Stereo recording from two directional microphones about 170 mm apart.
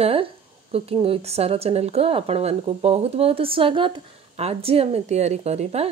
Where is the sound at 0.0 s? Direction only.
35° right (ahead or behind).